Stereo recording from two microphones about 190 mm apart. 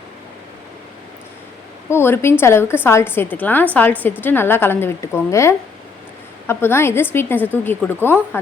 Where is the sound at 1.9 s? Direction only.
10° left (ahead or behind).